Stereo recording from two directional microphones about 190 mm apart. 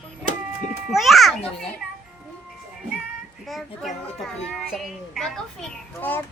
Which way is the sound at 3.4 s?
Centre (ahead or behind).